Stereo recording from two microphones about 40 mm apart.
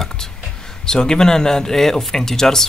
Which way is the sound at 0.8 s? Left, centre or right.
Centre.